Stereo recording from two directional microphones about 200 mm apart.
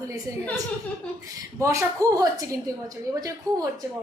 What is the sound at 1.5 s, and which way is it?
A woman's voice, 15° right (ahead or behind).